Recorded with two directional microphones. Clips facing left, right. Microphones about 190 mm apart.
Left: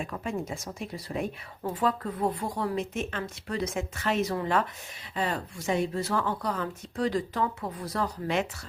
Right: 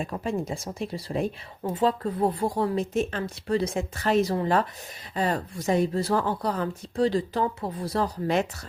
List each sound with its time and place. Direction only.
0.0 s speech: 35° right (ahead or behind)